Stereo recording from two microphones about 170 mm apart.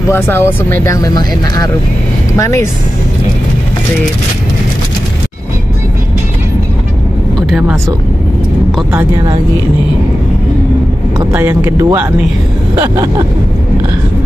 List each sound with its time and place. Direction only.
0.1 s speech: 15° left (ahead or behind)
7.3 s vehicle: 5° right (ahead or behind)
11.3 s speech: 15° right (ahead or behind)